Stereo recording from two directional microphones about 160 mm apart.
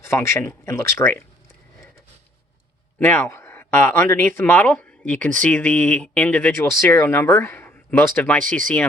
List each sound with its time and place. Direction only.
0.0 s speech: 15° left (ahead or behind)
3.0 s speech: 15° left (ahead or behind)